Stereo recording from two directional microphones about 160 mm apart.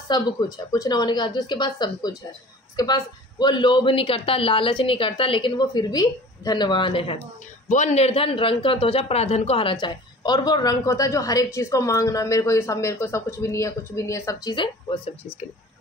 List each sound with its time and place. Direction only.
0.1 s a man's voice: 20° left (ahead or behind)
7.7 s a man's voice: 45° left (ahead or behind); by 15.0 s 30° left (ahead or behind)